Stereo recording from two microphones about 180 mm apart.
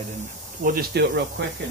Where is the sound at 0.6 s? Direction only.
60° right (ahead or behind).